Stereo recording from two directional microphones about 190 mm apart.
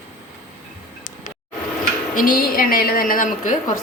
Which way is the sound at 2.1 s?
50° left (ahead or behind).